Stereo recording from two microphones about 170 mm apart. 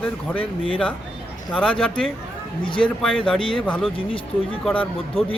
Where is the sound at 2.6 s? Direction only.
30° left (ahead or behind).